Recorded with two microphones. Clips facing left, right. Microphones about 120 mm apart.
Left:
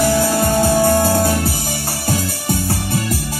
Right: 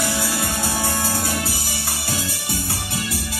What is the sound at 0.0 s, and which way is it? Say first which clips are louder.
Music: left 9 dB; 45° left (ahead or behind).